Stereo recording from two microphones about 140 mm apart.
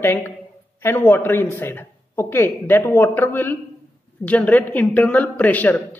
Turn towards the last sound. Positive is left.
turn(degrees=10)  # may be behind; listen again after turning